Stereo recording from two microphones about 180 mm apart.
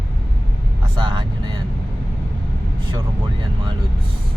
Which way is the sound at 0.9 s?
25° right (ahead or behind).